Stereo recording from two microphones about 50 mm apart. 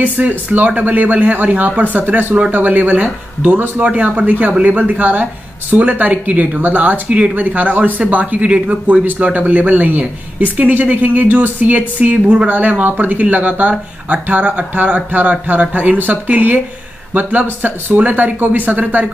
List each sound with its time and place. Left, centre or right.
0.0 s speech: right
3.8 s speech: right
4.3 s speech: right